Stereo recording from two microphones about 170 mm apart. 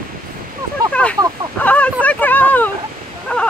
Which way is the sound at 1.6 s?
10° left (ahead or behind).